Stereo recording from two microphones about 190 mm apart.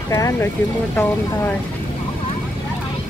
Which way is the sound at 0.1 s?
15° left (ahead or behind).